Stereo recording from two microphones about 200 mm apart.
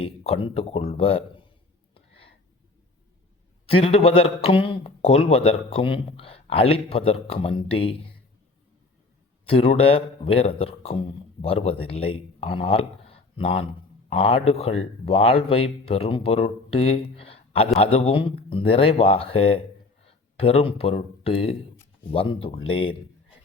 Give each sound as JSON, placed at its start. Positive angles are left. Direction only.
{"t": 0.0, "sound": "speech", "side_deg": 30}
{"t": 3.7, "sound": "speech", "side_deg": 30}
{"t": 9.5, "sound": "speech", "side_deg": 30}